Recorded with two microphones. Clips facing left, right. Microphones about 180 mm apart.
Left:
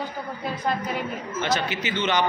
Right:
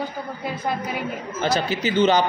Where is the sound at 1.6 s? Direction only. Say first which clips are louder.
Right 7 dB; 35° right (ahead or behind).